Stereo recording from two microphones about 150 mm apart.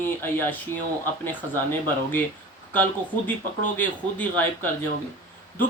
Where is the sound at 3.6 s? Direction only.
10° left (ahead or behind).